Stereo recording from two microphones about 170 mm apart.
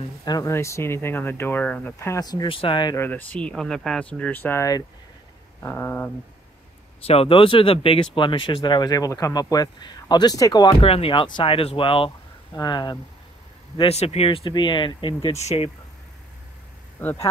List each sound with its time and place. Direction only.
0.2 s speech: 20° left (ahead or behind)
3.0 s speech: 10° left (ahead or behind)
7.0 s speech: 35° left (ahead or behind)
13.7 s speech: 35° left (ahead or behind)
17.0 s speech: 10° left (ahead or behind)